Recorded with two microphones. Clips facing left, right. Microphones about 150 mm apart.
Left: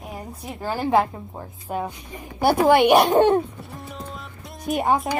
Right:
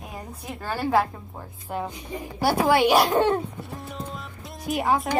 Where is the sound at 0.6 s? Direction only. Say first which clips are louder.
Left 3 dB; 15° left (ahead or behind).